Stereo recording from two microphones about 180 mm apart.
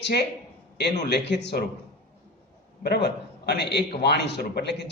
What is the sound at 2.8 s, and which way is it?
A man's voice, 65° left (ahead or behind).